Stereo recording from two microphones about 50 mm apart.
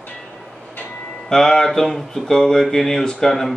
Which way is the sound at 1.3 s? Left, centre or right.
Centre.